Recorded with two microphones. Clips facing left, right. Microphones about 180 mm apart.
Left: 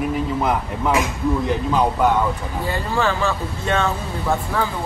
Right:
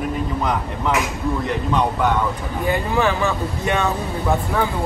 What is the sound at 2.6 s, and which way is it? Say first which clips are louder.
Speech: right 3 dB; 15° right (ahead or behind).